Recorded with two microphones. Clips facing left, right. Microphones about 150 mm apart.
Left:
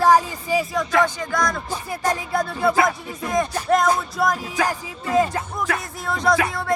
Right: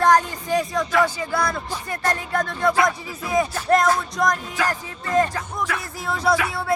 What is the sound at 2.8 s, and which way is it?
Speech, 5° right (ahead or behind).